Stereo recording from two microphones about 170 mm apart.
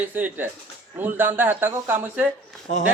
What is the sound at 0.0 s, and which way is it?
Speech, 10° right (ahead or behind).